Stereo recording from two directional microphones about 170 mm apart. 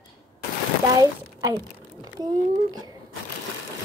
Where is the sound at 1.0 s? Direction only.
20° right (ahead or behind).